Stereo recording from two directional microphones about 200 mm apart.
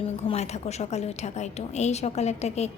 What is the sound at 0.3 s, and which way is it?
A woman's voice, 35° left (ahead or behind).